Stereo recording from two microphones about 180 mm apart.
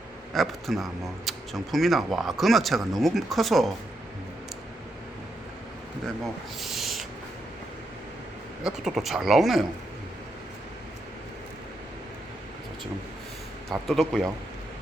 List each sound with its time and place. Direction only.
0.3 s speech: centre (ahead or behind)
6.6 s owl: centre (ahead or behind)
8.6 s speech: 5° right (ahead or behind)
13.7 s speech: centre (ahead or behind)